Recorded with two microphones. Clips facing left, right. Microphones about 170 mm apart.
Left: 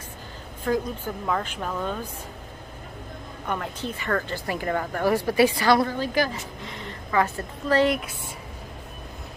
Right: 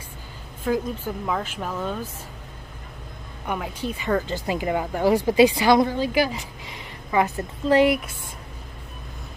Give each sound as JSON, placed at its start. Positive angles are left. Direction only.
{"t": 0.7, "sound": "speech", "side_deg": -5}
{"t": 3.4, "sound": "speech", "side_deg": -10}